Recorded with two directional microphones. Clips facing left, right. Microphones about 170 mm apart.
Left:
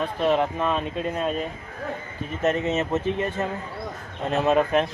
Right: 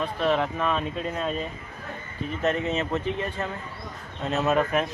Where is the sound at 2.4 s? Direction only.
20° left (ahead or behind).